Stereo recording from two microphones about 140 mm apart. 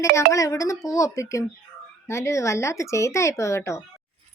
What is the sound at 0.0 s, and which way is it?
Speech, 20° left (ahead or behind).